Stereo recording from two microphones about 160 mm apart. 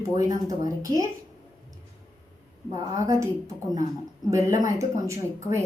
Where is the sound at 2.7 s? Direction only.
20° right (ahead or behind).